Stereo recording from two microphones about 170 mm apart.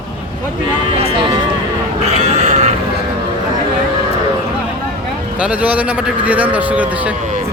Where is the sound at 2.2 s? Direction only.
40° right (ahead or behind).